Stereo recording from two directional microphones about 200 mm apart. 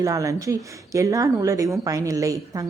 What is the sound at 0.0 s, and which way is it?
A woman's voice, 15° right (ahead or behind).